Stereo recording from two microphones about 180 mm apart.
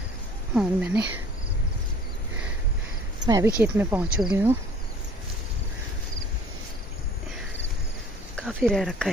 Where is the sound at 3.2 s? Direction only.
20° right (ahead or behind).